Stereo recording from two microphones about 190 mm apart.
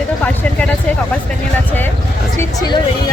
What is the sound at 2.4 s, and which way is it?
Speech, 20° left (ahead or behind).